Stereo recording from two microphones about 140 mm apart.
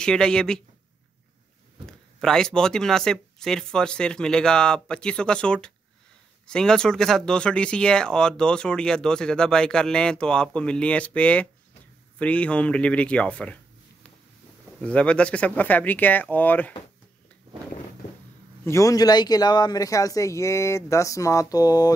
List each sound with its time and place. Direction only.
0.0 s speech: 5° left (ahead or behind)
2.1 s speech: 5° left (ahead or behind)
14.8 s speech: 10° left (ahead or behind)
18.6 s a man's voice: 20° left (ahead or behind)